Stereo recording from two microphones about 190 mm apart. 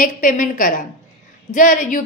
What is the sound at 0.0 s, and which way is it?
A woman's voice, 45° left (ahead or behind).